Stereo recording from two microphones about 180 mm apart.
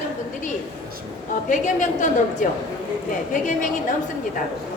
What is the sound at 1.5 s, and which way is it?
Speech, 45° left (ahead or behind).